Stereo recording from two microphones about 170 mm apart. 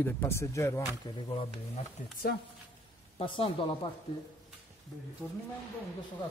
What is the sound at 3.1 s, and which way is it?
Speech, 35° left (ahead or behind).